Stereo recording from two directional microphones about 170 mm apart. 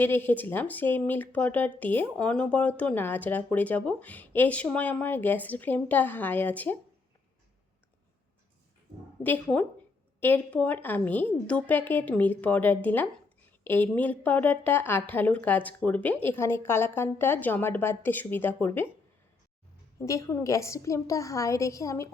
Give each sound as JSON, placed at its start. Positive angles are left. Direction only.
{"t": 0.0, "sound": "speech", "side_deg": 10}
{"t": 9.2, "sound": "speech", "side_deg": 10}
{"t": 20.0, "sound": "speech", "side_deg": 20}